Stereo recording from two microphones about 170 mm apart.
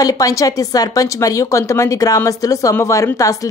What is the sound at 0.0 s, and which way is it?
Speech, 20° left (ahead or behind).